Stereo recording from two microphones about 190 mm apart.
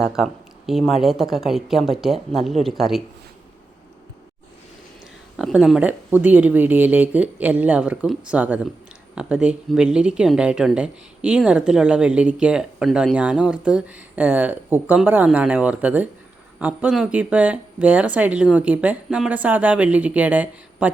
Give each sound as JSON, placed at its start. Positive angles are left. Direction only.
{"t": 0.0, "sound": "speech", "side_deg": 0}
{"t": 5.4, "sound": "speech", "side_deg": 0}